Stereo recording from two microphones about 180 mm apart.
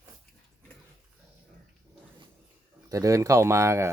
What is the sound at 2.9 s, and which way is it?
Speech, 20° right (ahead or behind).